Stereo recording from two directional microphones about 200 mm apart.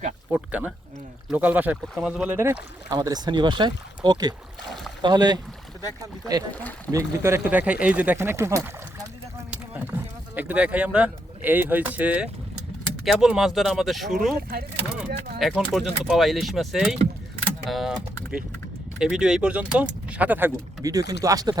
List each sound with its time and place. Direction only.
0.3 s speech: 5° right (ahead or behind)
6.5 s speech: 10° left (ahead or behind)
6.9 s speech: 15° right (ahead or behind)
15.4 s speech: centre (ahead or behind); by 21.6 s 20° right (ahead or behind)